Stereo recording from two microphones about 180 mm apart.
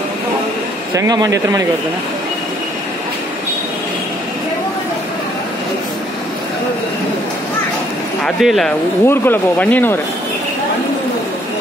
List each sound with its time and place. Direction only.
0.9 s speech: 20° right (ahead or behind)
8.4 s speech: centre (ahead or behind)
9.0 s speech: 10° left (ahead or behind)